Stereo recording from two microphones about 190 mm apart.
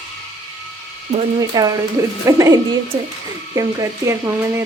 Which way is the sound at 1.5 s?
20° right (ahead or behind).